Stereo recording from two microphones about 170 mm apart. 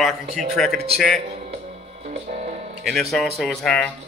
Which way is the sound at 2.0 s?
45° right (ahead or behind).